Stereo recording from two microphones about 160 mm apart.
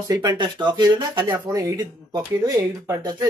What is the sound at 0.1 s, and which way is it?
Speech, 25° right (ahead or behind).